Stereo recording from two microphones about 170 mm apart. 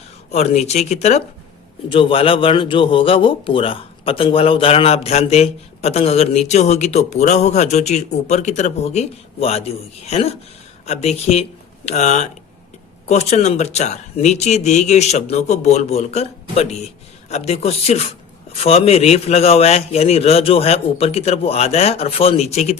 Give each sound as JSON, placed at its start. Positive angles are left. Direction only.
{"t": 0.3, "sound": "a man's voice", "side_deg": 40}